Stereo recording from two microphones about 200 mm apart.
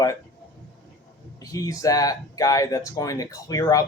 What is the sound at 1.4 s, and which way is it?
A man's voice, 15° left (ahead or behind).